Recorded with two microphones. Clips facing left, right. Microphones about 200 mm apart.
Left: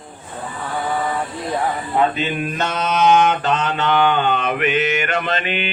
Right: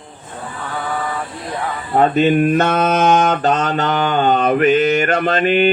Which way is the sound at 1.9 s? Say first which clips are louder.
Right 8 dB; 50° right (ahead or behind).